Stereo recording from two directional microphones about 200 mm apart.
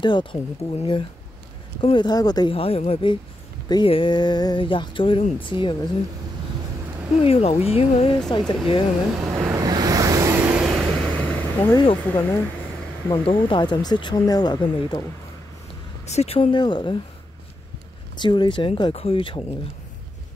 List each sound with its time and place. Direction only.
0.0 s speech: 25° left (ahead or behind)
7.2 s speech: 30° left (ahead or behind)
8.3 s speech: 20° left (ahead or behind)
9.2 s waves: 15° right (ahead or behind); by 11.6 s 5° left (ahead or behind)
11.6 s speech: 25° left (ahead or behind)
12.0 s speech: 10° left (ahead or behind)
13.2 s speech: 25° left (ahead or behind)
16.1 s speech: 30° left (ahead or behind)
18.1 s speech: 20° left (ahead or behind)